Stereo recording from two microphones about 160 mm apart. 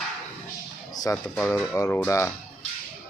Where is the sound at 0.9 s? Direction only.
25° left (ahead or behind).